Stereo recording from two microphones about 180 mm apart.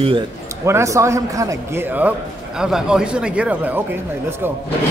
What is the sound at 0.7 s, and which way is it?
A man's voice, 15° right (ahead or behind).